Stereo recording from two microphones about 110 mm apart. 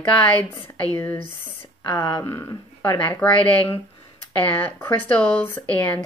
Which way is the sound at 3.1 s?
15° left (ahead or behind).